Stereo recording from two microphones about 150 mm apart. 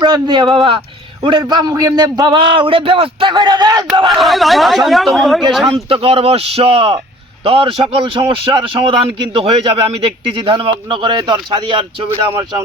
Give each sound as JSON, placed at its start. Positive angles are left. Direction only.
{"t": 0.0, "sound": "a man's voice", "side_deg": -30}
{"t": 4.1, "sound": "speech", "side_deg": 0}
{"t": 5.7, "sound": "a man's voice", "side_deg": -40}
{"t": 12.0, "sound": "a man's voice", "side_deg": -20}